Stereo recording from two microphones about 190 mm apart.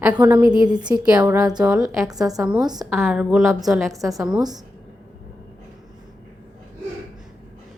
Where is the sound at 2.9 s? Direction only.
Centre (ahead or behind).